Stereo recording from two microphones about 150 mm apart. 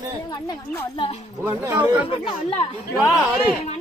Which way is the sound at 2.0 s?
35° left (ahead or behind).